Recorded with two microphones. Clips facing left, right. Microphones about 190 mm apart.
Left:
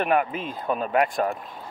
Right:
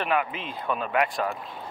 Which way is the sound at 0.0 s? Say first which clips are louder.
Left 4 dB; 45° left (ahead or behind).